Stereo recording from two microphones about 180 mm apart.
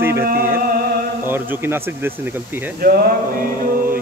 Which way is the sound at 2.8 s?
55° right (ahead or behind).